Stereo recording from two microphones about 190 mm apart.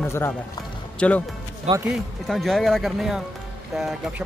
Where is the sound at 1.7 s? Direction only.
35° right (ahead or behind).